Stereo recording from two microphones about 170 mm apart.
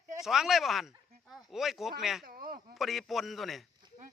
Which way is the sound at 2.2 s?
60° right (ahead or behind).